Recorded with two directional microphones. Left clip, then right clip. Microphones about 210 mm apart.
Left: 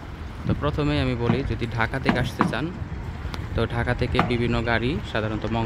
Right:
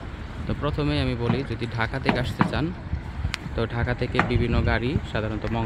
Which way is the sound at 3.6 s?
5° left (ahead or behind).